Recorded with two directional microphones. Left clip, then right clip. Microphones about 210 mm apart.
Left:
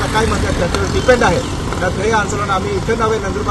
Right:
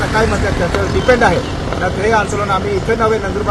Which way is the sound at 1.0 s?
10° right (ahead or behind).